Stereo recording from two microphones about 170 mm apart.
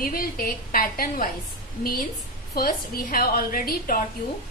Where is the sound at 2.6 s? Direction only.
60° left (ahead or behind).